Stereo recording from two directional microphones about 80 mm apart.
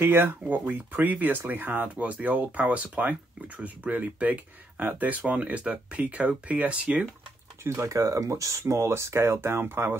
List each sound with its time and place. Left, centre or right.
0.0 s speech: right
7.6 s speech: right